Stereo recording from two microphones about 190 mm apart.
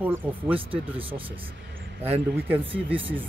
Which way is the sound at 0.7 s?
30° right (ahead or behind).